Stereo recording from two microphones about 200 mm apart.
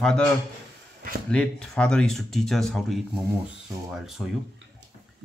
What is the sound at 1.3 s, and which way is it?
Speech, 5° left (ahead or behind).